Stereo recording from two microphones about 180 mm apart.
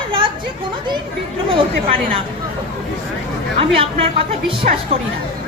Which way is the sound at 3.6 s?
30° right (ahead or behind).